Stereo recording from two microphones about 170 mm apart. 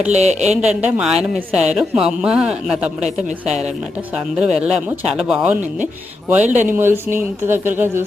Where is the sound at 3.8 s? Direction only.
5° right (ahead or behind).